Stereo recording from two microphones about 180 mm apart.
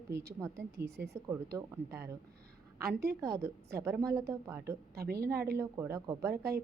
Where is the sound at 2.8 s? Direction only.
60° right (ahead or behind).